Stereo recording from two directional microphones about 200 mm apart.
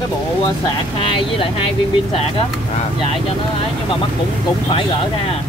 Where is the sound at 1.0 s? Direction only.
25° left (ahead or behind).